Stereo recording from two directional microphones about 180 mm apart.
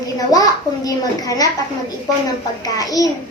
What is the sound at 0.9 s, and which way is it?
Child singing, 20° left (ahead or behind).